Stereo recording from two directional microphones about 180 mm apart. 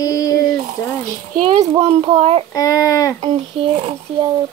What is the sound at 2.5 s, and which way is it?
Speech, 20° left (ahead or behind).